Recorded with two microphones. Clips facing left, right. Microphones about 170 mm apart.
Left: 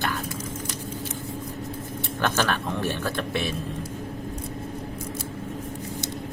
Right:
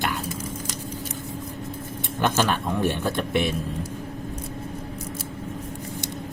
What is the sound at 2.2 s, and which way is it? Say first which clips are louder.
Speech: right 2 dB; 15° right (ahead or behind).